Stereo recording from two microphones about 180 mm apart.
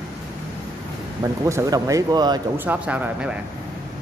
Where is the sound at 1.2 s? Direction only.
15° right (ahead or behind).